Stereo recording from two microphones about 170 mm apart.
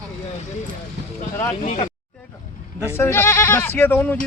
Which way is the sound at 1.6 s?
40° left (ahead or behind).